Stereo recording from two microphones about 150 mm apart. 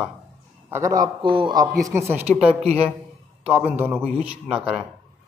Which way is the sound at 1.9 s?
15° right (ahead or behind).